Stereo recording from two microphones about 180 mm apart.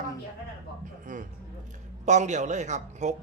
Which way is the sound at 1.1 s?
45° right (ahead or behind).